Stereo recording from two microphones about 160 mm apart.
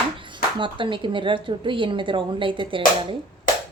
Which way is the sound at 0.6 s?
30° right (ahead or behind).